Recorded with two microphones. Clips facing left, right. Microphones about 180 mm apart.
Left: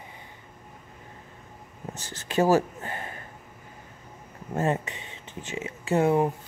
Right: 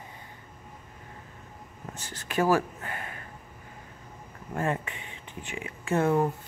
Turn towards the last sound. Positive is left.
turn(degrees=15)  # may be behind; listen again after turning